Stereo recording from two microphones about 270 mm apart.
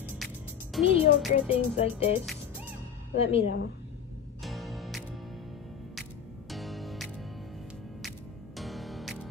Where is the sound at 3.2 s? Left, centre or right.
Left.